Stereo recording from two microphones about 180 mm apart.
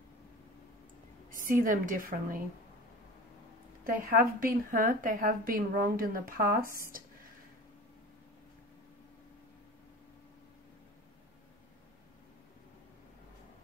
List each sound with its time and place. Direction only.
1.3 s a woman's voice: 50° right (ahead or behind)
3.8 s a woman's voice: 50° right (ahead or behind)